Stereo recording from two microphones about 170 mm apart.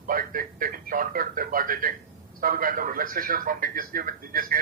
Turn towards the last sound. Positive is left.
turn(degrees=-60)  # may be behind; listen again after turning